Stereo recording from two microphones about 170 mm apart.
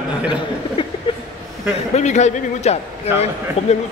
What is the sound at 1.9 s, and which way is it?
A man's voice, 45° left (ahead or behind).